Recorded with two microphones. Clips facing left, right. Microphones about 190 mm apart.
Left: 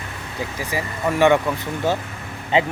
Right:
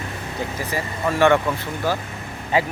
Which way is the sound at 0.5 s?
15° left (ahead or behind).